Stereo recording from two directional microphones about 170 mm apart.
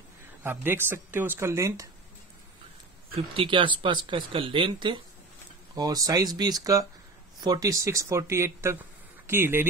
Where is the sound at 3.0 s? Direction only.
35° right (ahead or behind).